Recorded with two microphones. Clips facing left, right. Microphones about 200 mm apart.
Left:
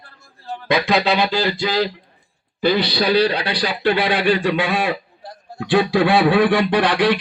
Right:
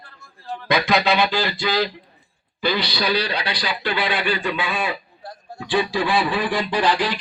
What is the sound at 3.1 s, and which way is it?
A man's voice, 55° left (ahead or behind).